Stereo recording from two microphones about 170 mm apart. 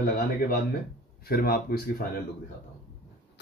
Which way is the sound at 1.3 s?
60° left (ahead or behind).